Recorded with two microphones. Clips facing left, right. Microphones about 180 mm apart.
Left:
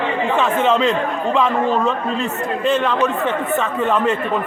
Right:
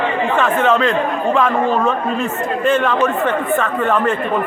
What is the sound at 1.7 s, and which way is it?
A man's voice, 5° right (ahead or behind).